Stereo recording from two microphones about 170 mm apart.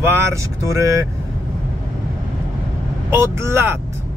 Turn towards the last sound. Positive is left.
turn(degrees=-15)  # may be behind; listen again after turning